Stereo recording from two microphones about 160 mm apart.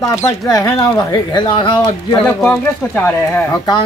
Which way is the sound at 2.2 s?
5° left (ahead or behind).